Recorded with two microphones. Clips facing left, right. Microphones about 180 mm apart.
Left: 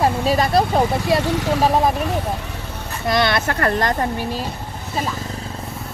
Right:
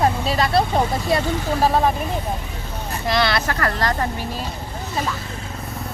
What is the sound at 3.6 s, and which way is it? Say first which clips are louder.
Speech: left 3 dB; 20° left (ahead or behind).